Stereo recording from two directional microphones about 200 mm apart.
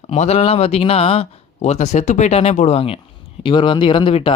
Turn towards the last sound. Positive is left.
turn(degrees=25)  # may be behind; listen again after turning